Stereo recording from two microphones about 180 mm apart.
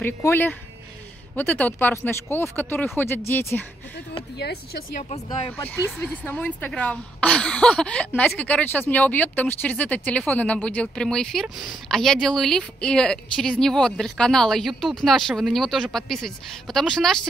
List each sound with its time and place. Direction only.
0.0 s speech: 10° left (ahead or behind)
4.4 s speech: 65° left (ahead or behind)
6.2 s a woman's voice: 10° left (ahead or behind)